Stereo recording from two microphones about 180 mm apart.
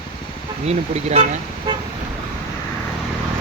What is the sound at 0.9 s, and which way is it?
Speech, 35° right (ahead or behind).